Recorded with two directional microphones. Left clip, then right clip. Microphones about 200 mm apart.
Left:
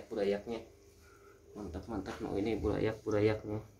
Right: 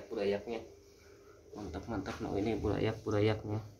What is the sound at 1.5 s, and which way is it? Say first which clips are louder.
Speech: right 1 dB; 5° left (ahead or behind).